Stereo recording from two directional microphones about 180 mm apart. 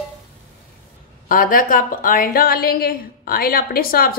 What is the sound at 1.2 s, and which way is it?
A woman's voice, 50° left (ahead or behind).